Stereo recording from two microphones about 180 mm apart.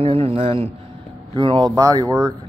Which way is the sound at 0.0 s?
30° right (ahead or behind).